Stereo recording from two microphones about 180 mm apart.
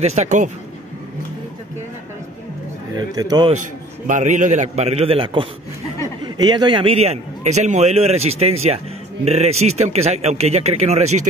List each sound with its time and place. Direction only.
0.0 s a man's voice: 40° right (ahead or behind)
3.0 s speech: 20° right (ahead or behind)
4.1 s a man's voice: 45° right (ahead or behind)